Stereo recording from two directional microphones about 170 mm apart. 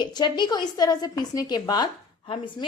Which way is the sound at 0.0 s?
25° left (ahead or behind).